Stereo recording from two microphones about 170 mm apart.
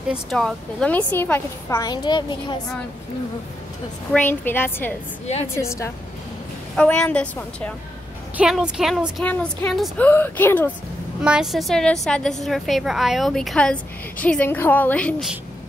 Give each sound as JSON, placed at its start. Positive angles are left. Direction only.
{"t": 0.1, "sound": "speech", "side_deg": 0}
{"t": 4.1, "sound": "speech", "side_deg": 10}
{"t": 6.7, "sound": "speech", "side_deg": 5}
{"t": 8.4, "sound": "speech", "side_deg": -5}
{"t": 11.2, "sound": "a woman's voice", "side_deg": -5}